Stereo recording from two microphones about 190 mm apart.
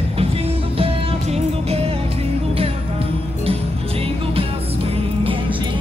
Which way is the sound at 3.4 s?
30° right (ahead or behind).